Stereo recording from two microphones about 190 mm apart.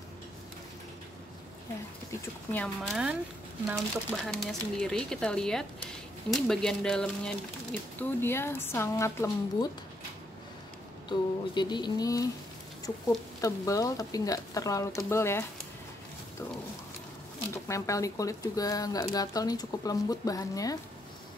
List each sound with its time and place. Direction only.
2.5 s speech: 5° left (ahead or behind)
11.1 s speech: 25° left (ahead or behind)
17.6 s speech: 15° left (ahead or behind)